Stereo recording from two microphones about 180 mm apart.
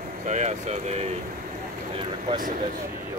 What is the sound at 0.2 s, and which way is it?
Speech, 45° right (ahead or behind).